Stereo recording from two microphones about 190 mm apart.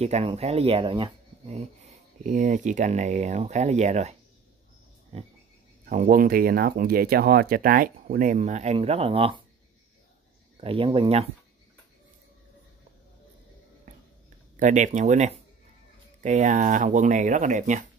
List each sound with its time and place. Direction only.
0.0 s speech: 35° right (ahead or behind)
5.9 s speech: 50° right (ahead or behind); by 9.4 s 30° right (ahead or behind)
10.6 s speech: 30° right (ahead or behind)
14.6 s speech: 40° right (ahead or behind)